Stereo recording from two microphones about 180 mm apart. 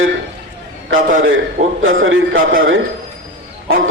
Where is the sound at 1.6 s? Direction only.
40° right (ahead or behind).